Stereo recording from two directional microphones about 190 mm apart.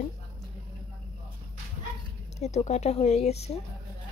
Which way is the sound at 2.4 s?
35° left (ahead or behind).